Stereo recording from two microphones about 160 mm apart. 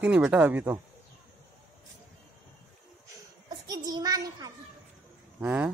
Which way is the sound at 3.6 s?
25° right (ahead or behind).